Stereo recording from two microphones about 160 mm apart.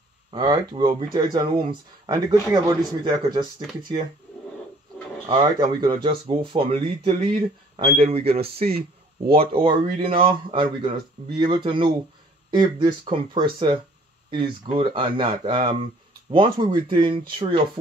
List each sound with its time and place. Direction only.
0.3 s speech: 30° right (ahead or behind)
5.3 s speech: 30° right (ahead or behind)